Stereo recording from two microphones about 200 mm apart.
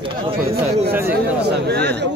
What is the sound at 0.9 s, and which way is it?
Speech, 10° right (ahead or behind).